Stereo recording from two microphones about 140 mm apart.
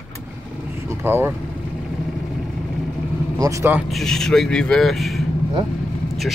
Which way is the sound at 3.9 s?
Centre (ahead or behind).